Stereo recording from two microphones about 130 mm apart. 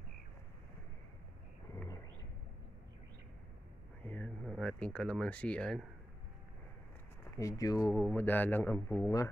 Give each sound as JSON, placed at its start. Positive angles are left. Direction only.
{"t": 4.0, "sound": "a sound", "side_deg": 10}
{"t": 7.3, "sound": "speech", "side_deg": 25}
{"t": 8.2, "sound": "a man's voice", "side_deg": 15}